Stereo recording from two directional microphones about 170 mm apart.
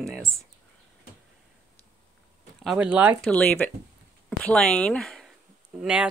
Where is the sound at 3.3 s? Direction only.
5° left (ahead or behind).